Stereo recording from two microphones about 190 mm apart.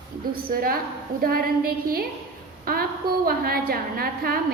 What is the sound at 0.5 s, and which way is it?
A woman's voice, 50° right (ahead or behind).